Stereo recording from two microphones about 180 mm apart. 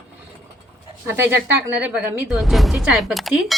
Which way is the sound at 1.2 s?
15° right (ahead or behind).